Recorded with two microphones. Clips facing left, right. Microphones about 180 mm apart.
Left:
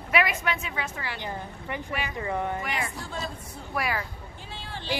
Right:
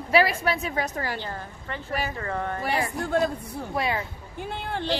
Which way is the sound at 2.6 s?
35° right (ahead or behind).